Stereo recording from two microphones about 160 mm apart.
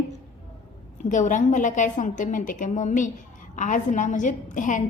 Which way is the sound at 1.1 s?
50° left (ahead or behind).